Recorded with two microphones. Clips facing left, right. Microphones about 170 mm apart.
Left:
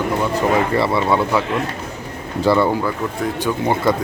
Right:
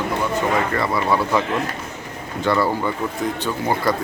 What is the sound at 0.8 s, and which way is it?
Speech, 25° left (ahead or behind).